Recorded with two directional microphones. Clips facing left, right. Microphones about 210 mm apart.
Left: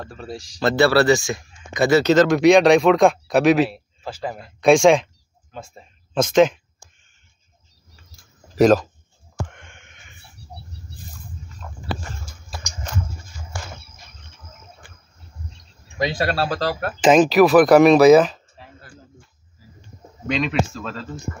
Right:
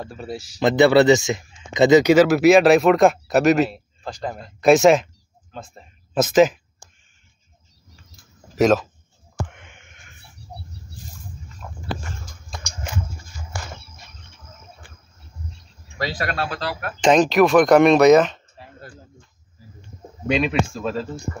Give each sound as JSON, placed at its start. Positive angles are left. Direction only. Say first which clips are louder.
{"t": 0.1, "sound": "speech", "louder": "right 2 dB", "side_deg": -5}
{"t": 0.6, "sound": "speech", "louder": "right 2 dB", "side_deg": -20}
{"t": 6.1, "sound": "speech", "louder": "even", "side_deg": -5}
{"t": 8.5, "sound": "speech", "louder": "left 2 dB", "side_deg": 0}
{"t": 9.5, "sound": "a sound", "louder": "even", "side_deg": -5}
{"t": 11.6, "sound": "a sound", "louder": "right 2 dB", "side_deg": -10}
{"t": 16.0, "sound": "speech", "louder": "left 4 dB", "side_deg": 25}
{"t": 17.0, "sound": "speech", "louder": "left 2 dB", "side_deg": 5}
{"t": 20.2, "sound": "speech", "louder": "right 1 dB", "side_deg": -10}